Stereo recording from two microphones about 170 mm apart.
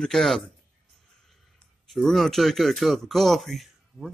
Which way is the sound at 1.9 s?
Centre (ahead or behind).